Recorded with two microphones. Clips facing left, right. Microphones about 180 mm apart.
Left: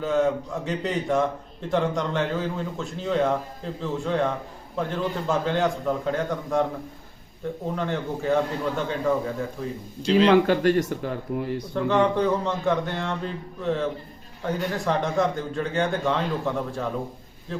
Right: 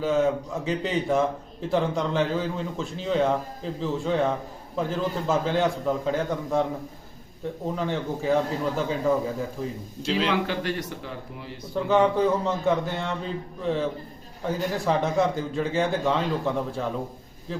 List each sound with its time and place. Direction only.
0.0 s a man's voice: centre (ahead or behind)
10.2 s speech: 45° left (ahead or behind)
11.7 s a man's voice: 5° right (ahead or behind)